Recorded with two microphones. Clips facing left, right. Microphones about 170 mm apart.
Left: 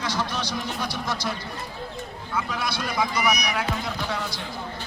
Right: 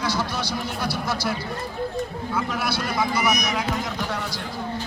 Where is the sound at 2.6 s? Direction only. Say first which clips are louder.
Right 2 dB; 10° right (ahead or behind).